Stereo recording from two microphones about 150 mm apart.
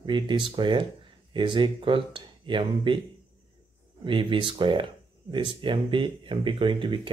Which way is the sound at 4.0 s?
35° right (ahead or behind).